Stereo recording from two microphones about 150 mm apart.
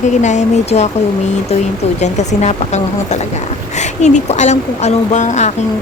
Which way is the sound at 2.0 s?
50° left (ahead or behind).